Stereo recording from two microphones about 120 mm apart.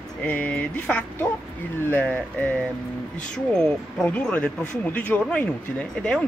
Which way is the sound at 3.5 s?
10° left (ahead or behind).